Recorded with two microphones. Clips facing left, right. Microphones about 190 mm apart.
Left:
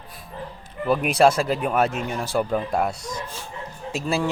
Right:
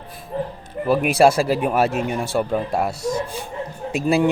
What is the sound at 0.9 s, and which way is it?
Speech, 5° right (ahead or behind).